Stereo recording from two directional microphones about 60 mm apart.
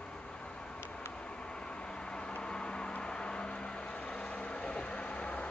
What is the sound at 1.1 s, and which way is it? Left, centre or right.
Vehicle, centre.